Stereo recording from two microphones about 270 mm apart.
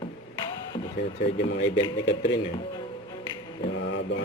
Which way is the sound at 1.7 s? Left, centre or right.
Centre.